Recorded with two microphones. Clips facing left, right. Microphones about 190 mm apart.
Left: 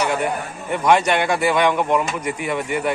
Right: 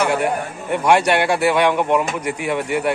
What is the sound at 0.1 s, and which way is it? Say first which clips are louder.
A man's voice: right 3 dB; 10° right (ahead or behind).